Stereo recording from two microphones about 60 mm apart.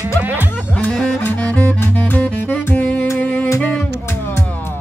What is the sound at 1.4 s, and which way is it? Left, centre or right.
Music, left.